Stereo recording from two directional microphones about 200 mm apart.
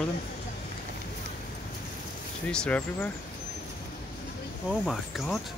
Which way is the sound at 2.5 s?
5° left (ahead or behind).